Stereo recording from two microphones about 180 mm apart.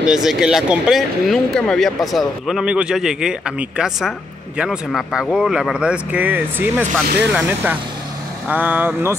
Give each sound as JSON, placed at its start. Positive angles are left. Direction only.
{"t": 0.0, "sound": "speech", "side_deg": -5}